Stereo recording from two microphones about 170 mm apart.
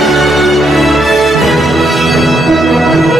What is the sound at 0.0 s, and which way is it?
Music, centre (ahead or behind).